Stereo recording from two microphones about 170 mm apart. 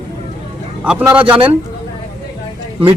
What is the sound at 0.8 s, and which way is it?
Speech, 5° right (ahead or behind).